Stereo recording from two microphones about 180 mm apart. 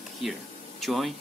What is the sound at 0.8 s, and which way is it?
Speech, centre (ahead or behind).